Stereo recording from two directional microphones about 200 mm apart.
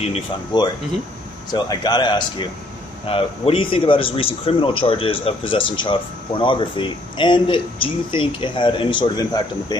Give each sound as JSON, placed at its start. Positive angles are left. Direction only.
{"t": 0.0, "sound": "speech", "side_deg": 30}